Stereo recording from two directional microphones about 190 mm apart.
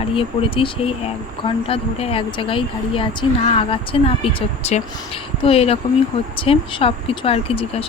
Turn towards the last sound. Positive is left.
turn(degrees=30)  # may be behind; listen again after turning